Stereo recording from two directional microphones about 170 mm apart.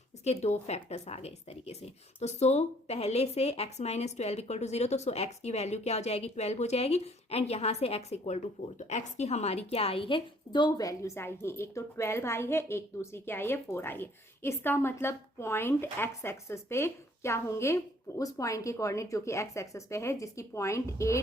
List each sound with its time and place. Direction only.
0.3 s a woman's voice: 40° left (ahead or behind); by 21.2 s 15° left (ahead or behind)